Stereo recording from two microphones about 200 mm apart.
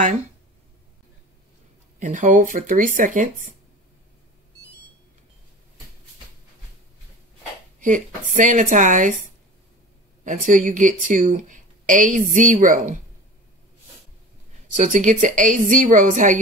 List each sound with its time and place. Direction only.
2.0 s speech: 40° right (ahead or behind)
7.8 s speech: 40° right (ahead or behind)
10.2 s speech: 40° right (ahead or behind)
14.8 s speech: 40° right (ahead or behind)